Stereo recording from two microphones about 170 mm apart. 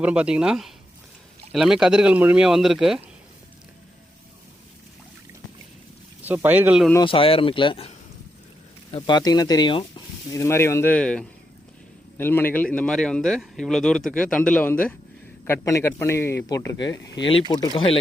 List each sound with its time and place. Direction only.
0.0 s speech: 5° right (ahead or behind)
6.2 s speech: 10° right (ahead or behind)
7.0 s speech: 30° left (ahead or behind)
10.3 s speech: 15° left (ahead or behind)